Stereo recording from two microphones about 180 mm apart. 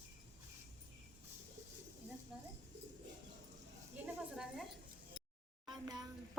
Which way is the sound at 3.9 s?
5° right (ahead or behind).